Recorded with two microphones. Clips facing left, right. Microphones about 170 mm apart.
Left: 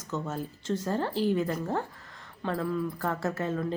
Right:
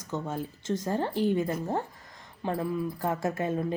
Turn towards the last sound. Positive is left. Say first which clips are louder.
# right 1 dB
turn(degrees=-15)  # may be behind; listen again after turning